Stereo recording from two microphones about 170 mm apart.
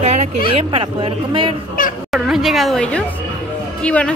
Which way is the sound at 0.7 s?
35° right (ahead or behind).